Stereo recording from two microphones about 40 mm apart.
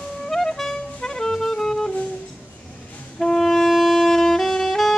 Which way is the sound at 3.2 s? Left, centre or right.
Centre.